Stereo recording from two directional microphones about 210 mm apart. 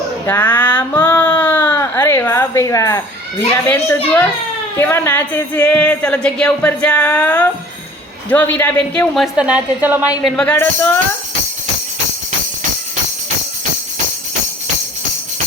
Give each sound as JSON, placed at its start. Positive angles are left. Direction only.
{"t": 0.3, "sound": "a sound", "side_deg": 10}
{"t": 3.7, "sound": "a woman's voice", "side_deg": 10}
{"t": 10.2, "sound": "speech", "side_deg": 5}